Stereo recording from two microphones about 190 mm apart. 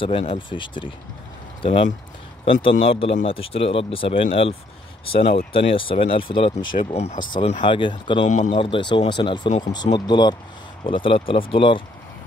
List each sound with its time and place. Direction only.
0.0 s speech: 30° left (ahead or behind)
7.6 s speech: 25° left (ahead or behind)
8.3 s speech: 35° left (ahead or behind)